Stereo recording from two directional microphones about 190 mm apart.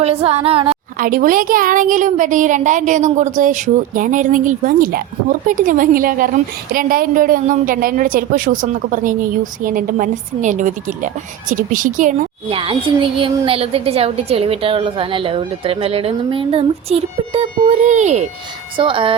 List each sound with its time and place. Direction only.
0.0 s a woman's voice: 30° right (ahead or behind)
0.9 s a woman's voice: 45° right (ahead or behind)
12.5 s a woman's voice: 30° right (ahead or behind)
18.8 s a woman's voice: 25° right (ahead or behind)